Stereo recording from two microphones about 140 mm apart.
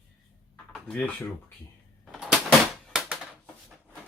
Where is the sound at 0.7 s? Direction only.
5° left (ahead or behind).